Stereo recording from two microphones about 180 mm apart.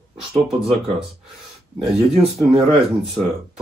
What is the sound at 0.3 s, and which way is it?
Speech, centre (ahead or behind).